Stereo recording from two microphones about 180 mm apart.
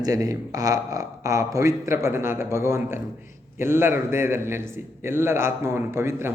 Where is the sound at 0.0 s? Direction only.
20° right (ahead or behind).